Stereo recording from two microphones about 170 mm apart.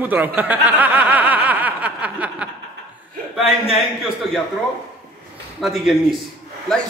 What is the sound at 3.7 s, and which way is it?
Speech, centre (ahead or behind).